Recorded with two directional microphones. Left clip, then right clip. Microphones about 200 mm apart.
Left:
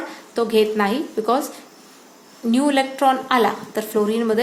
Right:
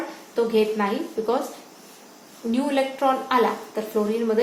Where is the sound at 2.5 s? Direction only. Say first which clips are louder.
Left 4 dB; 55° left (ahead or behind).